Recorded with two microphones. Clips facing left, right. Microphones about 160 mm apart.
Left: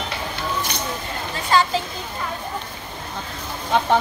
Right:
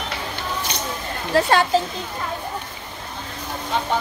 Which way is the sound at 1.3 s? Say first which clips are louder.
Right 3 dB; 60° right (ahead or behind).